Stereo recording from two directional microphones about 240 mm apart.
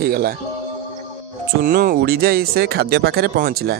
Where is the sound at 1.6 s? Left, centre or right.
Right.